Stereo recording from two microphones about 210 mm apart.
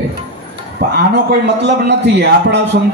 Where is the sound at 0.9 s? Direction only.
55° right (ahead or behind).